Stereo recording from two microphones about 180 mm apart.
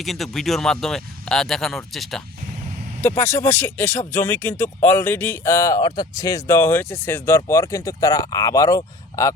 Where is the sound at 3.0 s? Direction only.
15° left (ahead or behind).